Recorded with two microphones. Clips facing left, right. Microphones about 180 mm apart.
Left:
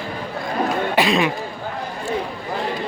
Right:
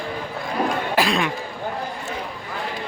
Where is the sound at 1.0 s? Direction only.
Centre (ahead or behind).